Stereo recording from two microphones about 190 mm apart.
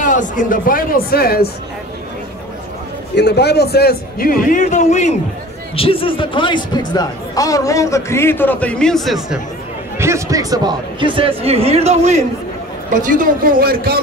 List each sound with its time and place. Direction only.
0.0 s a man's voice: 45° left (ahead or behind)
3.2 s a man's voice: 60° left (ahead or behind); by 5.1 s 40° left (ahead or behind)
5.8 s speech: 30° left (ahead or behind); by 9.4 s centre (ahead or behind)
9.9 s a man's voice: 15° right (ahead or behind); by 14.0 s 55° right (ahead or behind)